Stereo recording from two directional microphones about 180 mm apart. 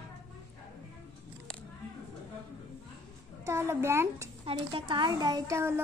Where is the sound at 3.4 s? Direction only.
15° right (ahead or behind).